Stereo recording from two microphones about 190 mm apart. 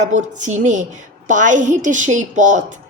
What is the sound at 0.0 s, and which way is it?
A woman's voice, 40° right (ahead or behind).